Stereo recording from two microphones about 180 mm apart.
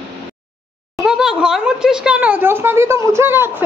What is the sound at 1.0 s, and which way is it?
Speech, 5° right (ahead or behind).